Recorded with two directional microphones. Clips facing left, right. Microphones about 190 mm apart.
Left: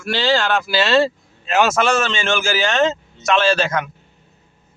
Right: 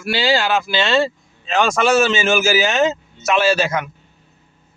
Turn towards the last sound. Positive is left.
turn(degrees=-5)  # may be behind; listen again after turning